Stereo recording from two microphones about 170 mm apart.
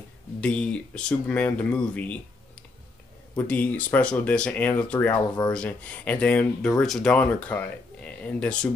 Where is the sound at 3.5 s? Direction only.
10° left (ahead or behind).